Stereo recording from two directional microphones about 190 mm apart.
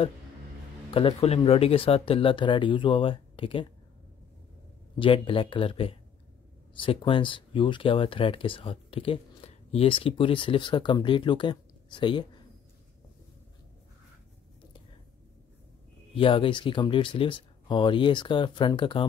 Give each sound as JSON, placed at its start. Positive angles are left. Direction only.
{"t": 0.9, "sound": "speech", "side_deg": 30}
{"t": 4.9, "sound": "speech", "side_deg": 25}
{"t": 16.2, "sound": "speech", "side_deg": 30}